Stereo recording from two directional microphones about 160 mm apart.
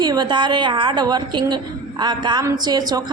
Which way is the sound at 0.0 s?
25° right (ahead or behind).